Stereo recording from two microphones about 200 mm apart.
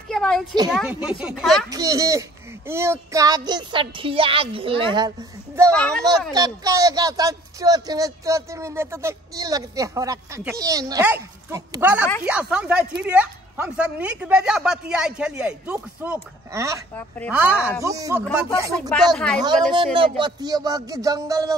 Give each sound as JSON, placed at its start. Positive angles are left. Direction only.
{"t": 0.1, "sound": "a sound", "side_deg": 0}
{"t": 0.7, "sound": "speech", "side_deg": -5}
{"t": 1.7, "sound": "speech", "side_deg": -15}
{"t": 5.7, "sound": "speech", "side_deg": 5}
{"t": 6.3, "sound": "speech", "side_deg": -20}
{"t": 18.8, "sound": "speech", "side_deg": 5}
{"t": 19.4, "sound": "speech", "side_deg": -25}